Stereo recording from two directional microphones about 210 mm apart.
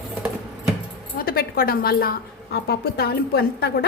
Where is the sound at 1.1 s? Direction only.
45° left (ahead or behind).